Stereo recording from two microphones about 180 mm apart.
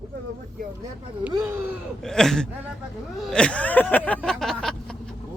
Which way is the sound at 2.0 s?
5° left (ahead or behind).